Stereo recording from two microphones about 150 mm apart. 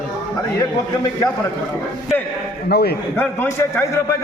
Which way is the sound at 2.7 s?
90° left.